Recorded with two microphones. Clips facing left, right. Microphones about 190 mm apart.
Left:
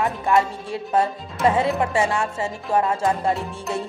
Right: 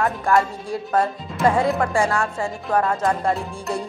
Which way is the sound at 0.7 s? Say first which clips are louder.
Right 1 dB; 25° left (ahead or behind).